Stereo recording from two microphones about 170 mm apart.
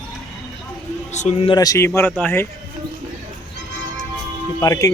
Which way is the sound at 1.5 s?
20° left (ahead or behind).